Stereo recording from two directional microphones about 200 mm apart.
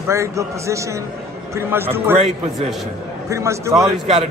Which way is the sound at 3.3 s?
15° right (ahead or behind).